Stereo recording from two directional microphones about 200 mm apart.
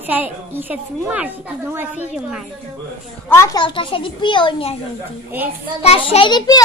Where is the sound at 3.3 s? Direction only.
15° left (ahead or behind).